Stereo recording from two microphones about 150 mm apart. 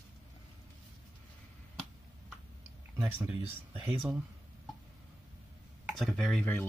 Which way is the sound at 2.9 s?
15° right (ahead or behind).